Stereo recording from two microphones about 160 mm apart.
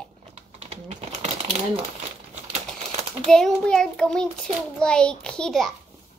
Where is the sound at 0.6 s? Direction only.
40° right (ahead or behind).